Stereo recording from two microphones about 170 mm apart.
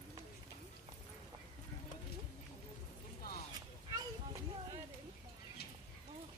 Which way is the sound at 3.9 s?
25° right (ahead or behind).